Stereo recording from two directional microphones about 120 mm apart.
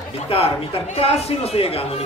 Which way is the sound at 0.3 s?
55° left (ahead or behind).